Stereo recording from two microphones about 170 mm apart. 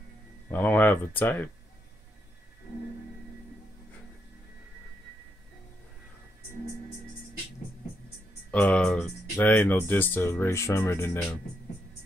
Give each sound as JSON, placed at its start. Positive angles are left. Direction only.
{"t": 0.5, "sound": "speech", "side_deg": 10}
{"t": 8.5, "sound": "speech", "side_deg": 10}